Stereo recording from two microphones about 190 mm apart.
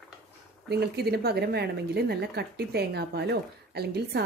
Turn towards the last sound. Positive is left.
turn(degrees=-60)  # may be behind; listen again after turning